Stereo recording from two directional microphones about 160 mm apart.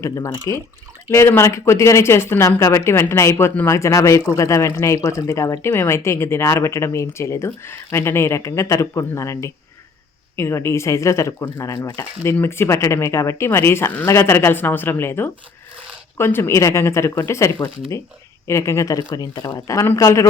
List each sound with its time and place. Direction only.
0.0 s speech: 20° left (ahead or behind)